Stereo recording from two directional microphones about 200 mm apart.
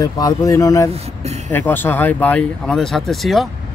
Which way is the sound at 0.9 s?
35° right (ahead or behind).